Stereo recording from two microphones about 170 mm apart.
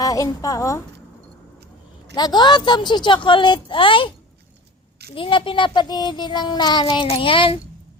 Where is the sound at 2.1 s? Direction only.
25° left (ahead or behind).